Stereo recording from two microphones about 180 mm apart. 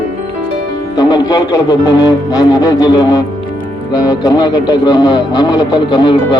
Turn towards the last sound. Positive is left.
turn(degrees=25)  # may be behind; listen again after turning